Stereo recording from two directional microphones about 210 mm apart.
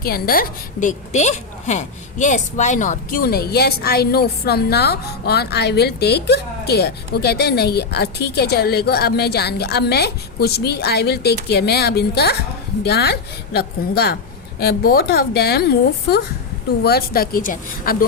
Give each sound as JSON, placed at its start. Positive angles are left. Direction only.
{"t": 0.0, "sound": "a woman's voice", "side_deg": 45}